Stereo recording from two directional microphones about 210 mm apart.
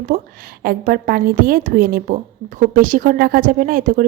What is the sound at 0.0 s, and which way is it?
A woman's voice, 40° right (ahead or behind).